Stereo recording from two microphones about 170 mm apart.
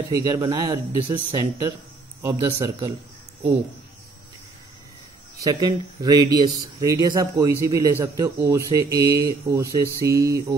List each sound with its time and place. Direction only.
0.1 s speech: 20° right (ahead or behind)
5.4 s speech: 25° right (ahead or behind)